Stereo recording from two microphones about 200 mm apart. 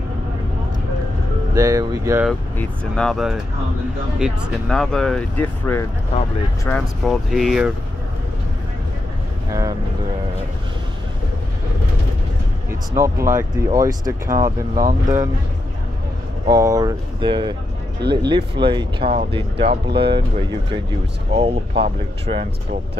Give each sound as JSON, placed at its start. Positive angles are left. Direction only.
{"t": 1.5, "sound": "speech", "side_deg": -15}
{"t": 2.5, "sound": "speech", "side_deg": 5}
{"t": 9.5, "sound": "vehicle", "side_deg": -20}
{"t": 12.9, "sound": "speech", "side_deg": -15}
{"t": 14.3, "sound": "speech", "side_deg": -45}
{"t": 16.4, "sound": "speech", "side_deg": -15}
{"t": 21.3, "sound": "speech", "side_deg": -25}